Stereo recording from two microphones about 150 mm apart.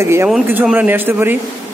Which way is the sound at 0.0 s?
15° right (ahead or behind).